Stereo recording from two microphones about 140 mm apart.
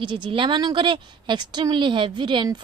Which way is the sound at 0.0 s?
35° right (ahead or behind).